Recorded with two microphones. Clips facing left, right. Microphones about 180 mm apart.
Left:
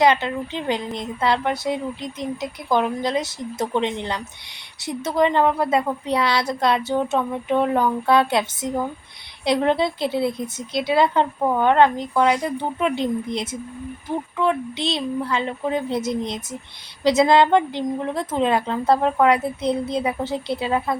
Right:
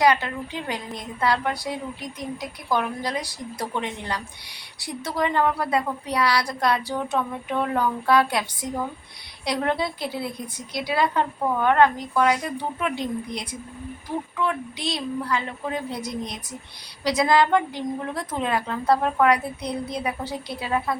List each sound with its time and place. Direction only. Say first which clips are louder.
0.0 s a woman's voice: left 3 dB; 25° left (ahead or behind)